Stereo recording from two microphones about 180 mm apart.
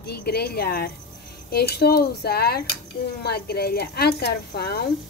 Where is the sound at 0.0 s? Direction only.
60° left (ahead or behind).